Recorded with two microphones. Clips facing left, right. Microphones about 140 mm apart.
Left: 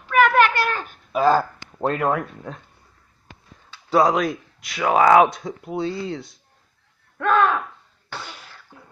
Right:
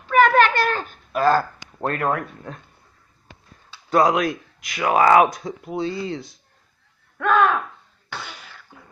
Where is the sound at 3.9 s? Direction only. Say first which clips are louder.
Even; centre (ahead or behind).